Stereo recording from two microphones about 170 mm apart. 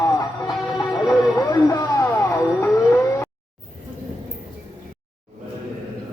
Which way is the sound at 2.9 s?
15° left (ahead or behind).